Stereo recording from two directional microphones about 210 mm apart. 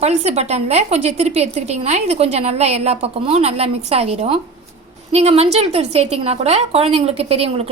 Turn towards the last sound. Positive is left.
turn(degrees=-30)  # may be behind; listen again after turning